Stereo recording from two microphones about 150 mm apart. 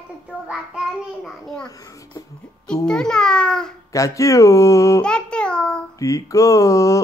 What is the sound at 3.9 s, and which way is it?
Speech, 20° left (ahead or behind).